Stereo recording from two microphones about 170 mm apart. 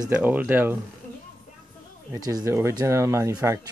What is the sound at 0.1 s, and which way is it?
Speech, 10° right (ahead or behind).